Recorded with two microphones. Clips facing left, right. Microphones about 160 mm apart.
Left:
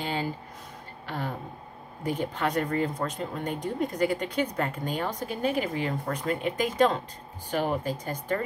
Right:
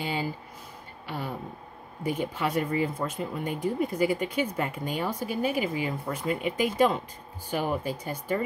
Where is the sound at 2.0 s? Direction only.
10° right (ahead or behind).